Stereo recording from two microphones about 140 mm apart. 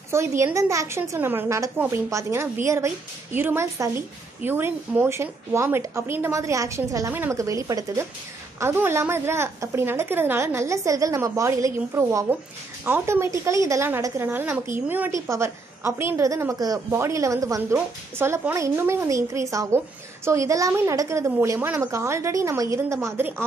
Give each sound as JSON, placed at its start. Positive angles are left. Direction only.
{"t": 0.1, "sound": "a woman's voice", "side_deg": -20}